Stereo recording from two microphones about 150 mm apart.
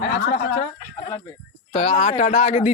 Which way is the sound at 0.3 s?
50° left (ahead or behind).